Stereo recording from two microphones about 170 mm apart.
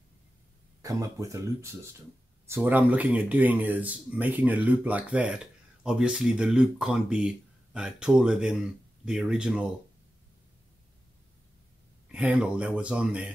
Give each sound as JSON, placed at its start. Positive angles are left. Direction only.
{"t": 0.8, "sound": "speech", "side_deg": -20}
{"t": 12.1, "sound": "speech", "side_deg": -5}